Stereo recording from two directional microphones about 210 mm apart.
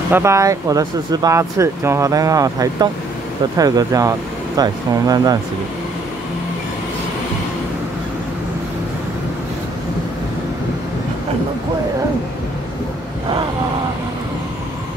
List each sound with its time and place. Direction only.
0.1 s speech: 15° right (ahead or behind)